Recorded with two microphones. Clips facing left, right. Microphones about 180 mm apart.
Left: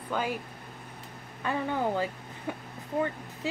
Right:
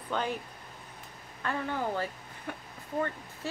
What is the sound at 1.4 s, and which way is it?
A woman's voice, 15° left (ahead or behind).